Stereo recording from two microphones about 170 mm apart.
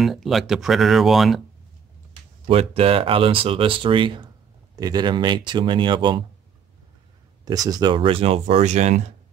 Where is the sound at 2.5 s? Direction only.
35° right (ahead or behind).